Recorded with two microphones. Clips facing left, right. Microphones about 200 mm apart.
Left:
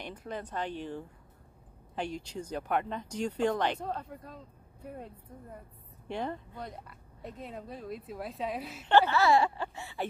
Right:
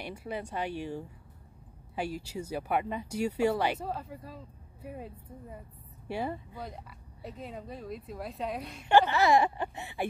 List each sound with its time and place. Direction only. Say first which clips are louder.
0.0 s speech: right 2 dB; 10° right (ahead or behind)
8.8 s speech: right 1 dB; 15° right (ahead or behind)